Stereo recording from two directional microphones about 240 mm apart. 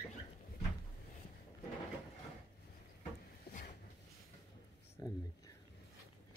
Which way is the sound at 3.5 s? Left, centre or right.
Left.